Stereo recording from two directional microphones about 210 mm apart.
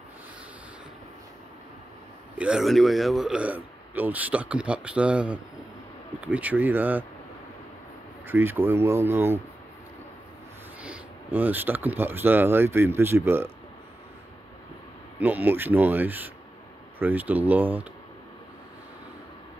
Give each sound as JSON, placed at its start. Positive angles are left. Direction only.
{"t": 2.3, "sound": "a man's voice", "side_deg": -5}
{"t": 8.3, "sound": "speech", "side_deg": -10}
{"t": 10.8, "sound": "speech", "side_deg": -5}
{"t": 15.1, "sound": "speech", "side_deg": -10}